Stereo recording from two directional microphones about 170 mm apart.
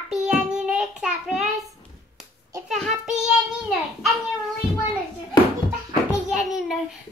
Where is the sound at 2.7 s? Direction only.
Centre (ahead or behind).